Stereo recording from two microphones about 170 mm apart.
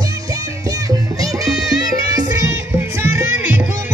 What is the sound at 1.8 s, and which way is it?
Music, 20° right (ahead or behind).